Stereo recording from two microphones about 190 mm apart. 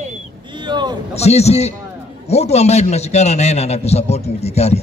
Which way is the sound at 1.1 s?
35° left (ahead or behind).